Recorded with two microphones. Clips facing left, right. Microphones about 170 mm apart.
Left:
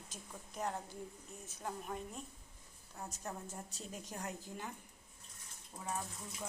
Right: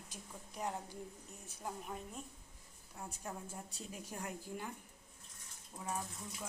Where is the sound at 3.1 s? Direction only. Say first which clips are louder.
Even; 10° right (ahead or behind).